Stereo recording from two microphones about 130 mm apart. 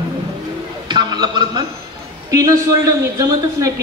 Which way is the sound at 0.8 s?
35° right (ahead or behind).